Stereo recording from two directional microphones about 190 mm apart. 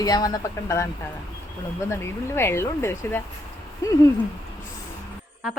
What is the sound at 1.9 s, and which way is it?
Speech, 15° left (ahead or behind).